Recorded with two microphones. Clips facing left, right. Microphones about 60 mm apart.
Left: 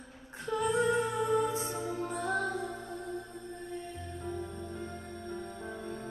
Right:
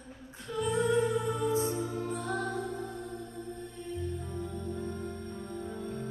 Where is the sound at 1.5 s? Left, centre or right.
Right.